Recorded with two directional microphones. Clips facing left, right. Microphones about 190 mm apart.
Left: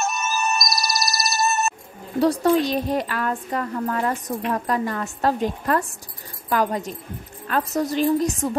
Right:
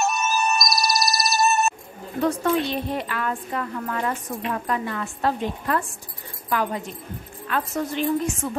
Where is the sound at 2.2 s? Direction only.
35° left (ahead or behind).